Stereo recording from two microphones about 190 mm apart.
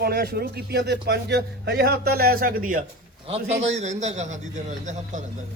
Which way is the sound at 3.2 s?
35° right (ahead or behind).